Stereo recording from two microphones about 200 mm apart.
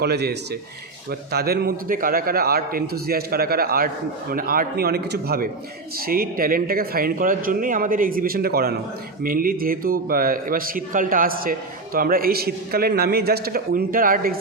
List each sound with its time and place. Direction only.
0.0 s speech: 55° right (ahead or behind)